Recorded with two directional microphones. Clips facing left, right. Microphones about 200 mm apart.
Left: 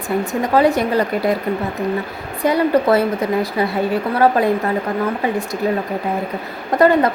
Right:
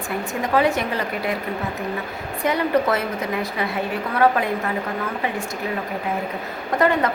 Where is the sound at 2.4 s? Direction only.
35° left (ahead or behind).